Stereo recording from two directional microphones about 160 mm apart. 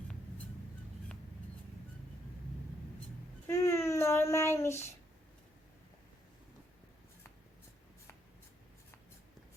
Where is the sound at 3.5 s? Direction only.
15° left (ahead or behind).